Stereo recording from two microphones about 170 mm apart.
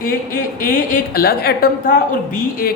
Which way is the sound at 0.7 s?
55° left (ahead or behind).